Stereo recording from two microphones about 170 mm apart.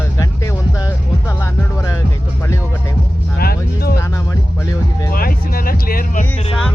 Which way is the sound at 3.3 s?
65° left (ahead or behind).